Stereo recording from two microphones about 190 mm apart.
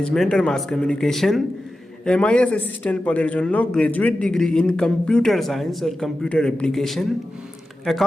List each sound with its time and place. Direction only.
0.0 s a man's voice: 5° left (ahead or behind)